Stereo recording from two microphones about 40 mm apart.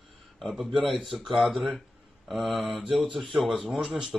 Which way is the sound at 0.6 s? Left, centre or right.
Centre.